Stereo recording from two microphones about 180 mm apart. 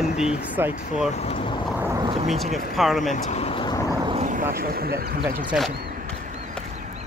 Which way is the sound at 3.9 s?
25° right (ahead or behind).